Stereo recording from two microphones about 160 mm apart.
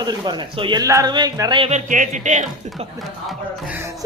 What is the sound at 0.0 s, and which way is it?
Speech, 25° right (ahead or behind).